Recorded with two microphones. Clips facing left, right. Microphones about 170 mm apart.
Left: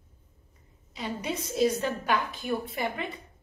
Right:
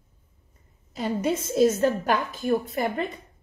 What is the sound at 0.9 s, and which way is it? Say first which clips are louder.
A woman's voice: right 7 dB; 50° right (ahead or behind).